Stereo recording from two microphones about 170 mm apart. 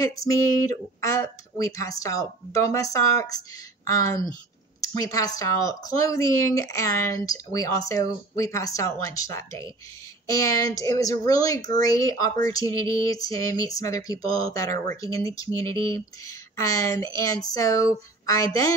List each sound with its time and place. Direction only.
0.0 s speech: 20° left (ahead or behind)